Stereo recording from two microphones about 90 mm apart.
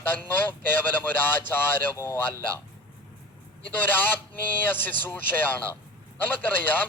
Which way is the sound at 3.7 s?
20° left (ahead or behind).